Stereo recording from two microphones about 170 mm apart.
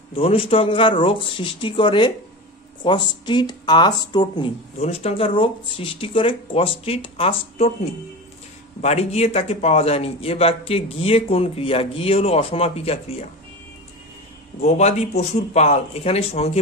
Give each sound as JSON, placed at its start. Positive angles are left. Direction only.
{"t": 0.1, "sound": "a man's voice", "side_deg": 35}
{"t": 4.7, "sound": "a man's voice", "side_deg": 40}
{"t": 8.8, "sound": "a man's voice", "side_deg": 40}
{"t": 14.6, "sound": "a man's voice", "side_deg": 40}